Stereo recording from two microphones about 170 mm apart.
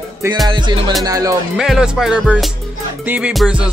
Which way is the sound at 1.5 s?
Centre (ahead or behind).